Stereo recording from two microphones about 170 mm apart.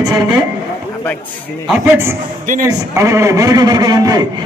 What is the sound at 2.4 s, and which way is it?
Speech, 50° right (ahead or behind).